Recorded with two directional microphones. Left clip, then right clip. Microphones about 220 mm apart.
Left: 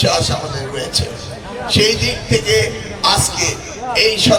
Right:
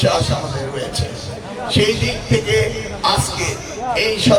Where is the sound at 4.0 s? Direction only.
50° left (ahead or behind).